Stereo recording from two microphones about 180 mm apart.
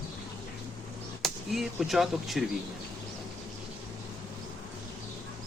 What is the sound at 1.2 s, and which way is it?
Speech, centre (ahead or behind).